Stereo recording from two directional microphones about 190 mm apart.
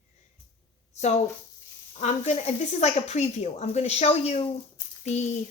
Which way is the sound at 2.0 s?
35° left (ahead or behind).